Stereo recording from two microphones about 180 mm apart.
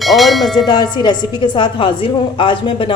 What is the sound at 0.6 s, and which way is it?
A woman's voice, 25° left (ahead or behind).